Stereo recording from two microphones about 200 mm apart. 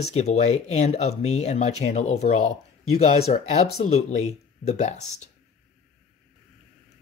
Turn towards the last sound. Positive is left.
turn(degrees=35)  # may be behind; listen again after turning